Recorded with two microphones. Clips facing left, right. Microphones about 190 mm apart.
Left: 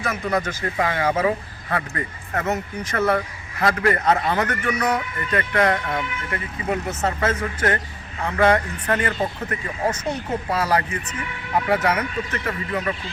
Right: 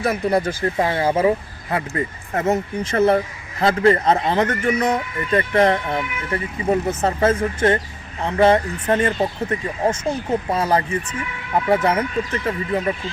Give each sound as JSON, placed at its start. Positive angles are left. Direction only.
{"t": 0.0, "sound": "speech", "side_deg": -30}